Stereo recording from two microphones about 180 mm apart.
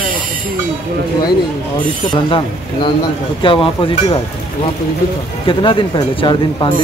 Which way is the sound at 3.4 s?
30° left (ahead or behind).